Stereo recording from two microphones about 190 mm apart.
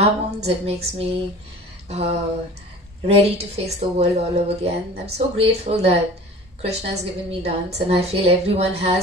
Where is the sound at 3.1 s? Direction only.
35° right (ahead or behind).